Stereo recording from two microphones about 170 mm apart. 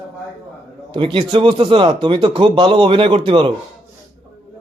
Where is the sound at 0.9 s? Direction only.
30° right (ahead or behind).